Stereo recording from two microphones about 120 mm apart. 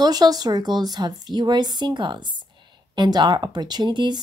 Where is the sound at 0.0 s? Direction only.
35° right (ahead or behind).